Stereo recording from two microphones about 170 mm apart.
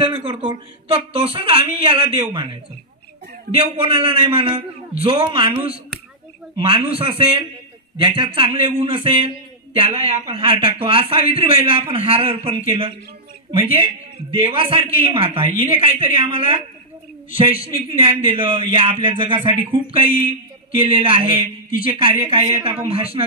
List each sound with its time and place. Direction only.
0.0 s speech: 30° right (ahead or behind)
3.5 s speech: 30° right (ahead or behind)
17.7 s speech: 35° right (ahead or behind)